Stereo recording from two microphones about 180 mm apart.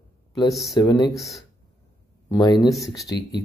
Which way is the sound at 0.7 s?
20° left (ahead or behind).